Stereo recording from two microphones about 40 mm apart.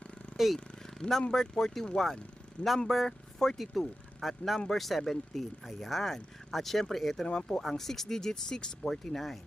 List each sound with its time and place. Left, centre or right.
0.3 s speech: centre
0.8 s a sound: centre
1.3 s speech: centre
3.6 s speech: centre
7.3 s speech: left
7.6 s speech: centre
8.9 s speech: centre